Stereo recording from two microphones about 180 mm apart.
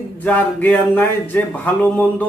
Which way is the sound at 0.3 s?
10° left (ahead or behind).